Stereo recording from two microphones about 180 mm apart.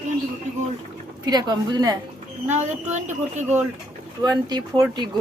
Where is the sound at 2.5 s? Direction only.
40° right (ahead or behind).